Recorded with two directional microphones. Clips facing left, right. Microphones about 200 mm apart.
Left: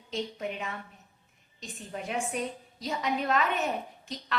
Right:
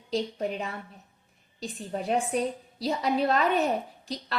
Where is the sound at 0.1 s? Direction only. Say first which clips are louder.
Right 5 dB; 35° right (ahead or behind).